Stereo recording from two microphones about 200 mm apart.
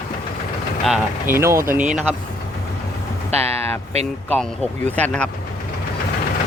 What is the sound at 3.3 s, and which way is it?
Speech, 30° right (ahead or behind).